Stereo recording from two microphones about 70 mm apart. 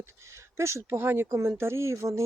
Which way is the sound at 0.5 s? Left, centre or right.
Right.